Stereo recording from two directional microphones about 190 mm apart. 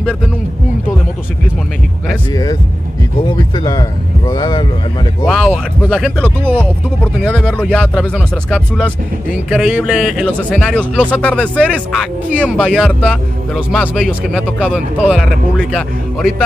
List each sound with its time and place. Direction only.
3.5 s speech: 20° left (ahead or behind)
5.2 s speech: centre (ahead or behind)